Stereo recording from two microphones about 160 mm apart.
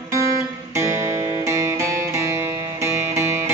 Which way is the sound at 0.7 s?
15° right (ahead or behind).